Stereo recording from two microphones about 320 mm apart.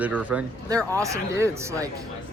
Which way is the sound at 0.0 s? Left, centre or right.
Centre.